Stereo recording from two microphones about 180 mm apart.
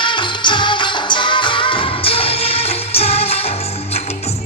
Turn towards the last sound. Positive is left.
turn(degrees=35)  # may be behind; listen again after turning